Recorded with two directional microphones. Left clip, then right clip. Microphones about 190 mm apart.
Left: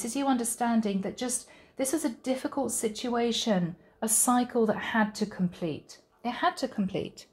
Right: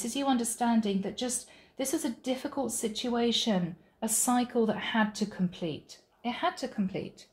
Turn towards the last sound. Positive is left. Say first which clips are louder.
# left 3 dB
turn(degrees=45)  # may be behind; listen again after turning